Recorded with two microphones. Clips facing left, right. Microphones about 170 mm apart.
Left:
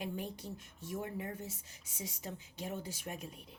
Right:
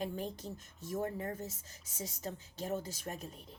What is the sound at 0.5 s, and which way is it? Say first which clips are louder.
A woman's voice: right 3 dB; 40° right (ahead or behind).